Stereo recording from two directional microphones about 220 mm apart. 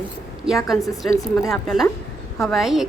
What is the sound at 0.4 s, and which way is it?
A woman's voice, centre (ahead or behind).